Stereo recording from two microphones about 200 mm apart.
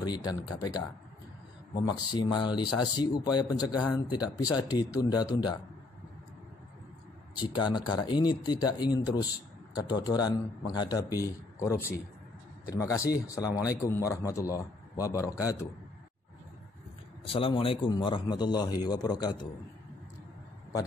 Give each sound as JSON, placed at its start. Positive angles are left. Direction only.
{"t": 0.0, "sound": "speech", "side_deg": 20}
{"t": 7.3, "sound": "speech", "side_deg": 20}
{"t": 17.3, "sound": "speech", "side_deg": 25}